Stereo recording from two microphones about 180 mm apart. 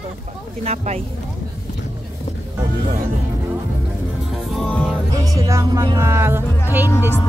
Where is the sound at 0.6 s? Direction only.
40° right (ahead or behind).